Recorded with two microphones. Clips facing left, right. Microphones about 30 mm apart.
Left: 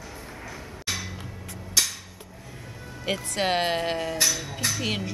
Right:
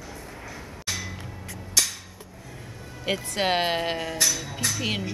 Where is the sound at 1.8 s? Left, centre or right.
Centre.